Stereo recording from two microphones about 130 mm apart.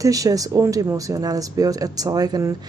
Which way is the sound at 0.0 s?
25° right (ahead or behind).